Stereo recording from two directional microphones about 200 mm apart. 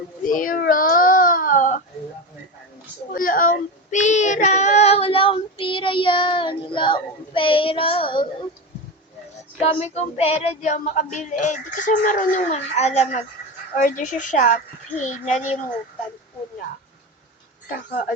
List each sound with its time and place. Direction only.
0.3 s baby cry: 45° left (ahead or behind)
3.1 s child singing: 45° left (ahead or behind); by 8.4 s 25° left (ahead or behind)
9.6 s child singing: 35° left (ahead or behind)
17.7 s speech: 45° left (ahead or behind)